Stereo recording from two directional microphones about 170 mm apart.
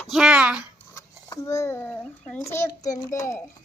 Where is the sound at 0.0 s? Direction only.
Centre (ahead or behind).